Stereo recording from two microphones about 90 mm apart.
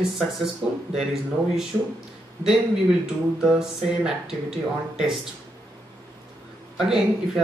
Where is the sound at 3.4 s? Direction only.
5° right (ahead or behind).